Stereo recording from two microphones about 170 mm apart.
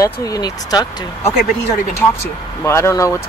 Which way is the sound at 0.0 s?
20° left (ahead or behind).